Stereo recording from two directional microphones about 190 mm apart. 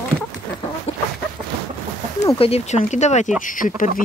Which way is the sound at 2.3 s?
30° left (ahead or behind).